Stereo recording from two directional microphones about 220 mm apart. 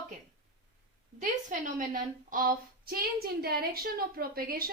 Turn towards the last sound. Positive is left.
turn(degrees=-45)  # may be behind; listen again after turning